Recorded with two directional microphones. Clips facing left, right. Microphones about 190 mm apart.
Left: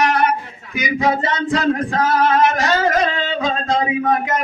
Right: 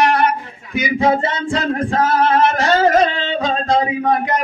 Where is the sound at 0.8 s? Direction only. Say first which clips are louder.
Right 3 dB; 30° right (ahead or behind).